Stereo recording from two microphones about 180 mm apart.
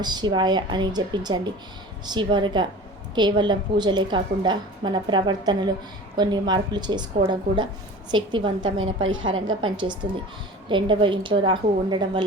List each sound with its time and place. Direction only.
0.0 s a woman's voice: 25° right (ahead or behind)
9.0 s a woman's voice: 90° right
9.6 s a woman's voice: 25° right (ahead or behind)